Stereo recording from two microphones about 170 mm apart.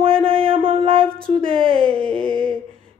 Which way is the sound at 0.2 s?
35° right (ahead or behind).